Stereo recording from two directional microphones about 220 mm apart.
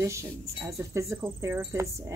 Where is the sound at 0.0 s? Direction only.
10° right (ahead or behind).